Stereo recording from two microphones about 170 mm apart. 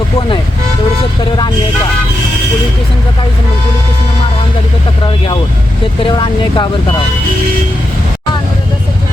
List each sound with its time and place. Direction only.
5.0 s speech: 30° left (ahead or behind)